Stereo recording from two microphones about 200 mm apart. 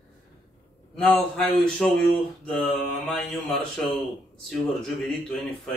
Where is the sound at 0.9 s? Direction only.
5° left (ahead or behind).